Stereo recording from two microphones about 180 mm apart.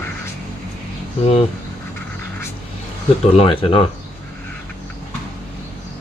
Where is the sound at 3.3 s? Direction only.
30° left (ahead or behind).